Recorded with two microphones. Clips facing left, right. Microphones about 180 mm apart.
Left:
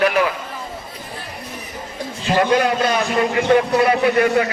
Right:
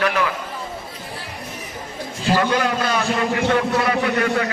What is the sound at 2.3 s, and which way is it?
A man's voice, 20° left (ahead or behind).